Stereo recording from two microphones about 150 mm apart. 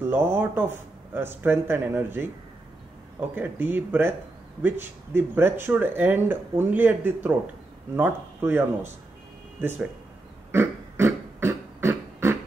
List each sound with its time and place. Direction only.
0.0 s speech: 15° right (ahead or behind)
3.3 s speech: 15° right (ahead or behind)
10.5 s beatboxing: 15° right (ahead or behind)